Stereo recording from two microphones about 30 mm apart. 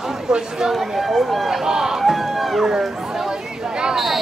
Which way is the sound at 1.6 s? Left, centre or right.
Centre.